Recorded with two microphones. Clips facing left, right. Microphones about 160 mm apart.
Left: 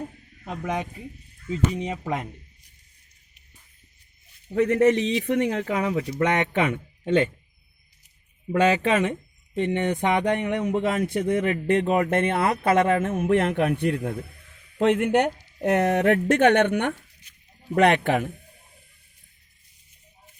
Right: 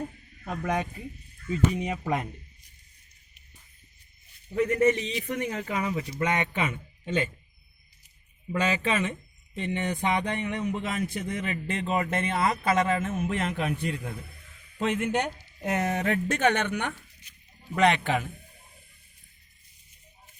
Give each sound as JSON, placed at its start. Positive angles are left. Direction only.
{"t": 1.5, "sound": "speech", "side_deg": 25}
{"t": 4.5, "sound": "speech", "side_deg": 75}
{"t": 8.5, "sound": "speech", "side_deg": 60}